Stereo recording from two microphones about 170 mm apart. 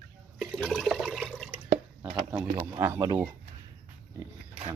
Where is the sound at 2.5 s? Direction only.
20° right (ahead or behind).